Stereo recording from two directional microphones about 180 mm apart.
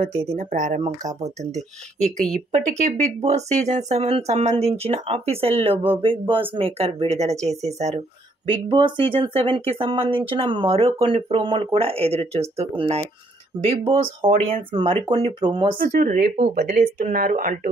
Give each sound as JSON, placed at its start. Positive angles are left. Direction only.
{"t": 0.0, "sound": "speech", "side_deg": -40}
{"t": 2.3, "sound": "speech", "side_deg": -40}
{"t": 8.6, "sound": "speech", "side_deg": -25}
{"t": 15.8, "sound": "speech", "side_deg": -50}